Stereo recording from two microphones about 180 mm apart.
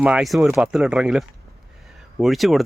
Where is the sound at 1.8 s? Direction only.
Centre (ahead or behind).